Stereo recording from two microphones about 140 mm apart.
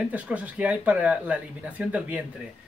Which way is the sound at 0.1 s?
10° right (ahead or behind).